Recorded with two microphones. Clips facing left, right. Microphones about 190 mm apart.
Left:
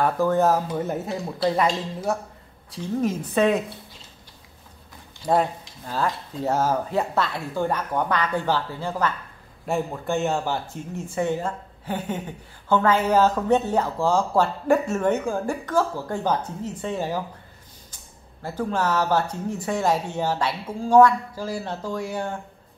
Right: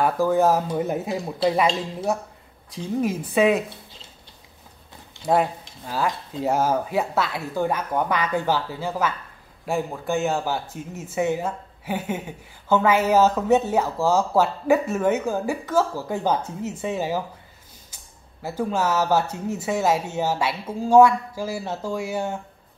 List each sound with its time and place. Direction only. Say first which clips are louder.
0.0 s speech: right 1 dB; 10° right (ahead or behind)
2.7 s speech: even; 10° right (ahead or behind)
5.2 s speech: right 1 dB; 5° right (ahead or behind)
18.4 s speech: right 1 dB; 10° right (ahead or behind)